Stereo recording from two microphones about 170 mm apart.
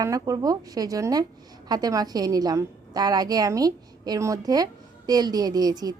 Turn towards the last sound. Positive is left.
turn(degrees=-25)  # may be behind; listen again after turning